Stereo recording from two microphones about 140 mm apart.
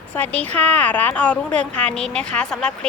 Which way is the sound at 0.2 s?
10° left (ahead or behind).